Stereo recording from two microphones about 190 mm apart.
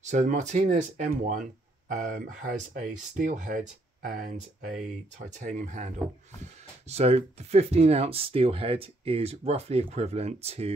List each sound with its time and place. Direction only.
0.0 s speech: 40° right (ahead or behind)